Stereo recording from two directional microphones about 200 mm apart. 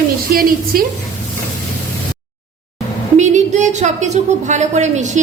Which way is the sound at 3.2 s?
35° right (ahead or behind).